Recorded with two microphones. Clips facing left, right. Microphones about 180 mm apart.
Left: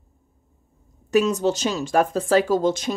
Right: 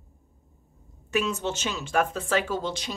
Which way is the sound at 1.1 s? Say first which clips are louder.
Left 8 dB; 40° left (ahead or behind).